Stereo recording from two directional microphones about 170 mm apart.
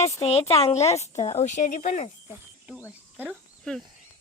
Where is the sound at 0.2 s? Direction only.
35° left (ahead or behind).